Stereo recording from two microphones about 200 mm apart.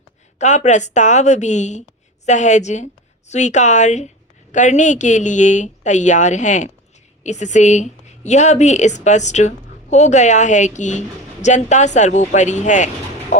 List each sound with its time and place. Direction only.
0.3 s a woman's voice: 35° left (ahead or behind)